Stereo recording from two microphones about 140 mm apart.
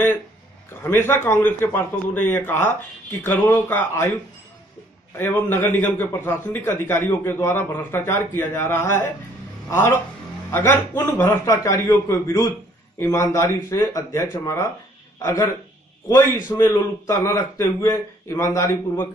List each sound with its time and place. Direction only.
0.8 s a man's voice: 15° left (ahead or behind)
5.1 s a man's voice: 15° left (ahead or behind)